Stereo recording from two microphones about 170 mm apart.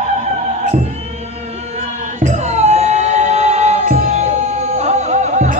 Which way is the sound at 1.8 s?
45° right (ahead or behind).